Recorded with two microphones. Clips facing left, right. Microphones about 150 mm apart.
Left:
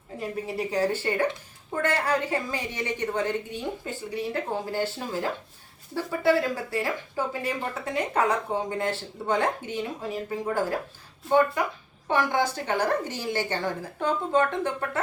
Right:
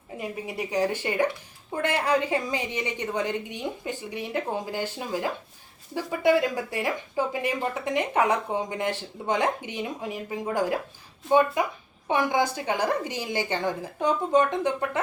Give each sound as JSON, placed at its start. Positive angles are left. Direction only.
{"t": 0.2, "sound": "a woman's voice", "side_deg": -15}